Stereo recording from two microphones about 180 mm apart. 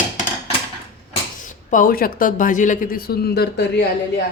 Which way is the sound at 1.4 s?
50° left (ahead or behind).